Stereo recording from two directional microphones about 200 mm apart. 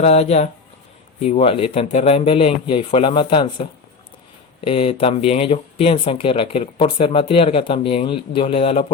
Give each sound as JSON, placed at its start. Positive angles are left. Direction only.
{"t": 0.0, "sound": "speech", "side_deg": 30}